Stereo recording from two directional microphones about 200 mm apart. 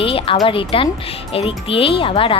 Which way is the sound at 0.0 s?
25° left (ahead or behind).